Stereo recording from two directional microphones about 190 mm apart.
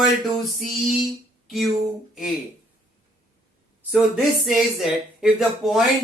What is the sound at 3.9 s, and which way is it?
Speech, centre (ahead or behind).